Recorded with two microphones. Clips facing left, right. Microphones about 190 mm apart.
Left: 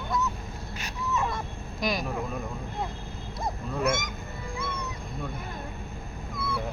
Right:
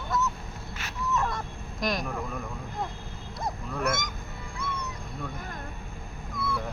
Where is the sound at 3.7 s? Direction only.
20° left (ahead or behind).